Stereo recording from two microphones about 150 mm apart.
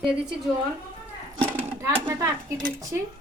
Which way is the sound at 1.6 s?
15° right (ahead or behind).